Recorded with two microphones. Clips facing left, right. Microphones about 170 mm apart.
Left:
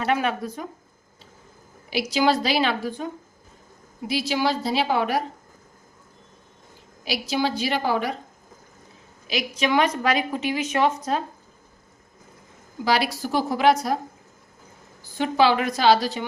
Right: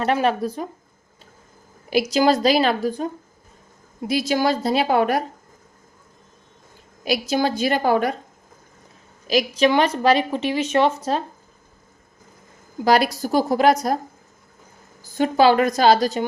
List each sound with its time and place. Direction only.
0.0 s a woman's voice: 35° right (ahead or behind)
1.9 s a woman's voice: 45° right (ahead or behind)
7.0 s a woman's voice: 50° right (ahead or behind)
9.2 s speech: 35° right (ahead or behind)
12.8 s a woman's voice: 45° right (ahead or behind)
15.2 s a woman's voice: 45° right (ahead or behind)